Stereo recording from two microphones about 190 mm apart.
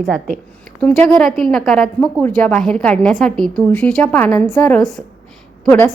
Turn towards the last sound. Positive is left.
turn(degrees=5)  # may be behind; listen again after turning